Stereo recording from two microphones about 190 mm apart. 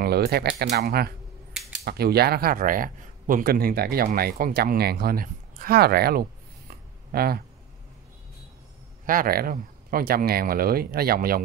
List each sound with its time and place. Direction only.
0.0 s speech: 55° right (ahead or behind)
1.5 s a sound: 5° right (ahead or behind)
1.9 s speech: 55° right (ahead or behind)
9.0 s speech: 45° right (ahead or behind)